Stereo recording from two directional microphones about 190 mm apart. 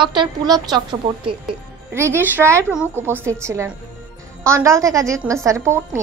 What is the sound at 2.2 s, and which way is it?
A woman's voice, 10° right (ahead or behind).